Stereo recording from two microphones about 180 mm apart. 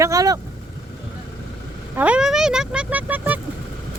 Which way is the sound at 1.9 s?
5° right (ahead or behind).